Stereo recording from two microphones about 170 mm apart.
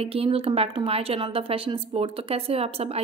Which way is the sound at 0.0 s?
35° right (ahead or behind).